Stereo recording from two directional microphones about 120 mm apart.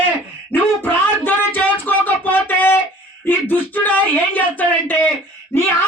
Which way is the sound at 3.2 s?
15° left (ahead or behind).